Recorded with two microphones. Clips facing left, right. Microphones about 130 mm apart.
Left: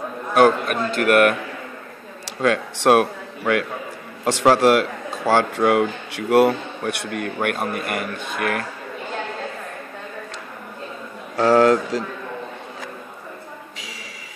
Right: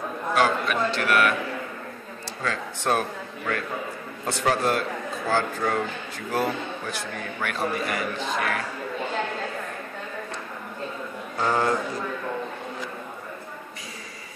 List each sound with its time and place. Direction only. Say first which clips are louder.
0.3 s a man's voice: left 7 dB; 55° left (ahead or behind)
2.2 s a man's voice: left 10 dB; 75° left (ahead or behind)
4.2 s speech: left 8 dB; 90° left; by 7.2 s 70° left (ahead or behind)
7.3 s a man's voice: left 2 dB; 55° left (ahead or behind)
11.3 s speech: left 9 dB; 80° left